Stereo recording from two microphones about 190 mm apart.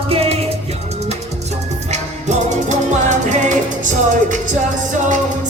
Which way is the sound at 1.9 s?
40° right (ahead or behind).